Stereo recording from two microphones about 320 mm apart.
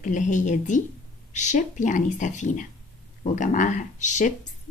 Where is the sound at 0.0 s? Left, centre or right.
Left.